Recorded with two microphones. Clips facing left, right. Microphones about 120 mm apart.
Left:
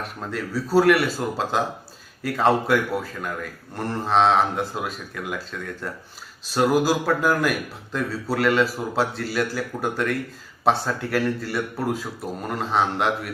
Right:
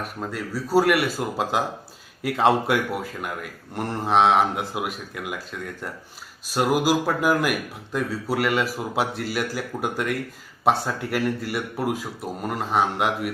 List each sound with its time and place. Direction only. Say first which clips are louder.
0.3 s a man's voice: left 3 dB; 10° right (ahead or behind)